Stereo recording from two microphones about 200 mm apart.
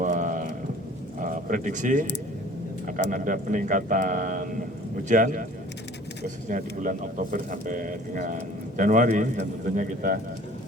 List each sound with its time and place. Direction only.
0.0 s a sound: 40° right (ahead or behind)
1.2 s speech: 40° right (ahead or behind)
3.1 s speech: 45° right (ahead or behind)